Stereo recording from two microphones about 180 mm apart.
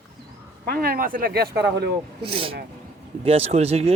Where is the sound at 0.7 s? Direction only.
55° right (ahead or behind).